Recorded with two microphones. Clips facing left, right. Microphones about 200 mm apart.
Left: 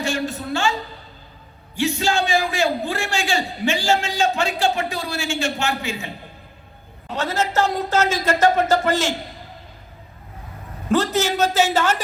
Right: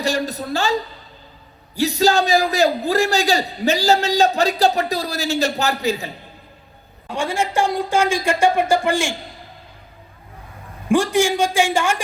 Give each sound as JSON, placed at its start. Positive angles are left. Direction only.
{"t": 0.0, "sound": "a man's voice", "side_deg": -35}
{"t": 7.2, "sound": "speech", "side_deg": -10}
{"t": 10.8, "sound": "speech", "side_deg": -10}